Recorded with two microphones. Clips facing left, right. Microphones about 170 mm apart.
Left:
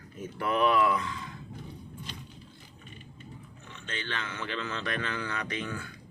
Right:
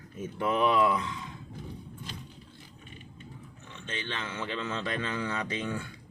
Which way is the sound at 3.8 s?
20° right (ahead or behind).